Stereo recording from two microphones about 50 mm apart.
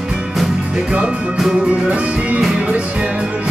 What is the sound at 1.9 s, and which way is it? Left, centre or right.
Music, right.